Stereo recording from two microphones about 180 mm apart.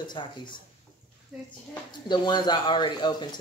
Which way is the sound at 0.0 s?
25° left (ahead or behind).